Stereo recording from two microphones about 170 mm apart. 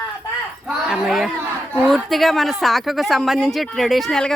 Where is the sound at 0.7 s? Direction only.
5° right (ahead or behind).